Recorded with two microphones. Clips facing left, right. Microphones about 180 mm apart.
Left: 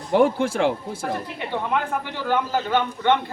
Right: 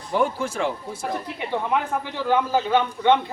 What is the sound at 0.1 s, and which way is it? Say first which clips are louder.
Speech: left 5 dB; 70° left (ahead or behind).